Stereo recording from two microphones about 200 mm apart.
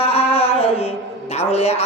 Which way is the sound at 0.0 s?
30° left (ahead or behind).